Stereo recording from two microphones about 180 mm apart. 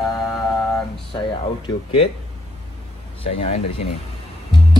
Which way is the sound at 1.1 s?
30° left (ahead or behind).